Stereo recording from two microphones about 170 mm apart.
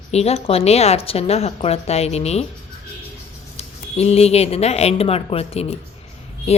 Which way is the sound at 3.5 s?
40° left (ahead or behind).